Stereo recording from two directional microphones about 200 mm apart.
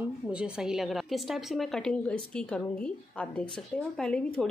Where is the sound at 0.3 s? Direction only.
5° right (ahead or behind).